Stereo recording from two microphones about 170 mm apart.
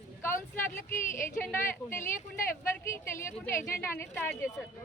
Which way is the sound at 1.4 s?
10° left (ahead or behind).